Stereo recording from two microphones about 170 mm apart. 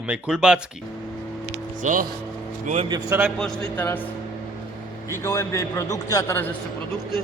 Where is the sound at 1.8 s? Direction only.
50° right (ahead or behind).